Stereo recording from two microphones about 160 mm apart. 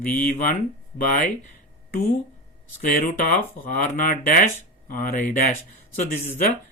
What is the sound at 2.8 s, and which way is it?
Speech, 60° left (ahead or behind).